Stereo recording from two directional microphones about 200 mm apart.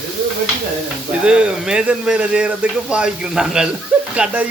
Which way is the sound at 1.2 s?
5° right (ahead or behind).